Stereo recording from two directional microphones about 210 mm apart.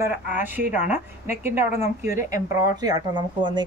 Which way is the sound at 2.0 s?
15° right (ahead or behind).